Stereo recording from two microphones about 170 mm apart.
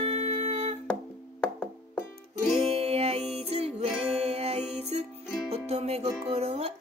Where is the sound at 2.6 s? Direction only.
35° right (ahead or behind).